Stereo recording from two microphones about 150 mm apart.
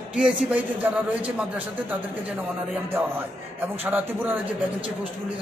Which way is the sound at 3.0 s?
10° right (ahead or behind).